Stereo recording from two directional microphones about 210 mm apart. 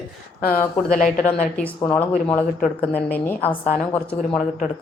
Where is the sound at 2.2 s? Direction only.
5° left (ahead or behind).